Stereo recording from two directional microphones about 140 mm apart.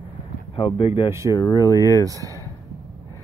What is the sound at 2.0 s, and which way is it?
Speech, 25° right (ahead or behind).